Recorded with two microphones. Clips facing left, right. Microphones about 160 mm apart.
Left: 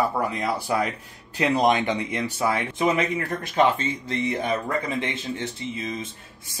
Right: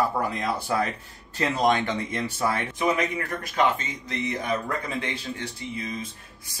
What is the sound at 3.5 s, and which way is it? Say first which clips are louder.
Speech: left 3 dB; 30° left (ahead or behind).